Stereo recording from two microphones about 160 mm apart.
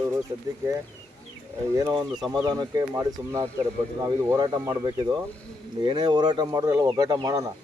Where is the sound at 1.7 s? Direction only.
20° right (ahead or behind).